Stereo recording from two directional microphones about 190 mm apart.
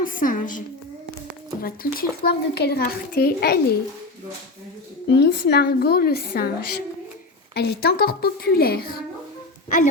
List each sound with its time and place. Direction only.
0.0 s a child's voice: 45° left (ahead or behind)
1.6 s a child's voice: 50° left (ahead or behind)
5.1 s a woman's voice: 60° left (ahead or behind)